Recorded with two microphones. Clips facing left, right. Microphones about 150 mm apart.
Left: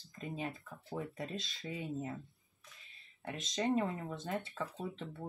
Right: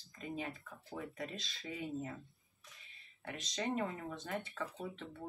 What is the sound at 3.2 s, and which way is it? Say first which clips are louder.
Speech: left 4 dB; 20° left (ahead or behind).